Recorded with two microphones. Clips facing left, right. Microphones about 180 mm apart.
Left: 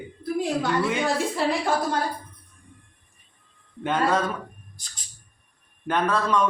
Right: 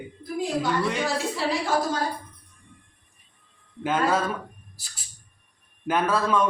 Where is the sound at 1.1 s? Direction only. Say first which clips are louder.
Left 2 dB; 55° left (ahead or behind).